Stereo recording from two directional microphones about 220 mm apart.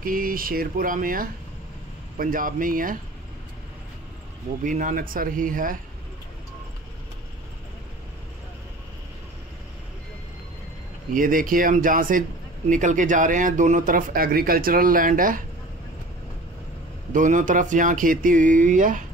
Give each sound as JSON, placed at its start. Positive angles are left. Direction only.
{"t": 0.0, "sound": "speech", "side_deg": -40}
{"t": 4.6, "sound": "speech", "side_deg": -35}
{"t": 11.1, "sound": "speech", "side_deg": -40}
{"t": 17.1, "sound": "speech", "side_deg": -35}